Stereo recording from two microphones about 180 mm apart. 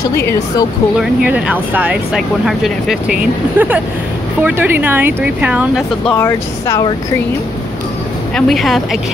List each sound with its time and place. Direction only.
0.1 s speech: 15° left (ahead or behind)
0.9 s speech: 10° right (ahead or behind)
6.0 s speech: 10° left (ahead or behind)
8.4 s speech: centre (ahead or behind)